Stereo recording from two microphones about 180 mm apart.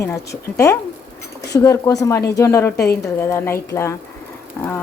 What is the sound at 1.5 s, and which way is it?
Speech, 20° left (ahead or behind).